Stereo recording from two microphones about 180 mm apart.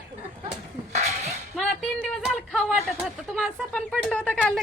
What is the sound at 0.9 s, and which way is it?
Dishes, 40° right (ahead or behind).